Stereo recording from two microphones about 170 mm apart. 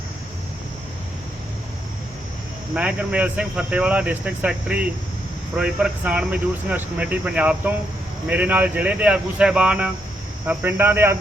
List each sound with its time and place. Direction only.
2.7 s speech: 5° right (ahead or behind)